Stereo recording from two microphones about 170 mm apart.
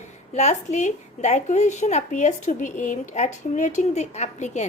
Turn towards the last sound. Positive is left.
turn(degrees=45)  # may be behind; listen again after turning